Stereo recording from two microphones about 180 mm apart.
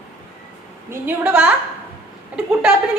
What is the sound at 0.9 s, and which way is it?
Speech, 10° right (ahead or behind).